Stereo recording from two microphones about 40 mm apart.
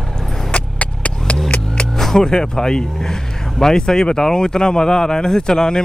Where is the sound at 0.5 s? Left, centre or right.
Left.